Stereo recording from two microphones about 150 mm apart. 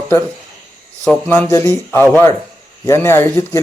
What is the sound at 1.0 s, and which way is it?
Speech, 10° left (ahead or behind).